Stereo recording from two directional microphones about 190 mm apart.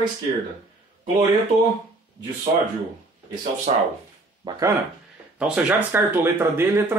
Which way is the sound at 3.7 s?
30° right (ahead or behind).